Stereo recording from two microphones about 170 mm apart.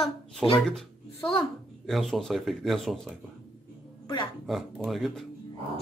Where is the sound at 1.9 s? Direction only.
Centre (ahead or behind).